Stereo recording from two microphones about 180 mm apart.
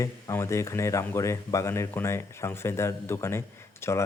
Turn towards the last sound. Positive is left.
turn(degrees=15)  # may be behind; listen again after turning